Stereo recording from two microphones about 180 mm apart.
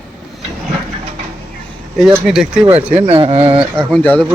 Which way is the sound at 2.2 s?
Centre (ahead or behind).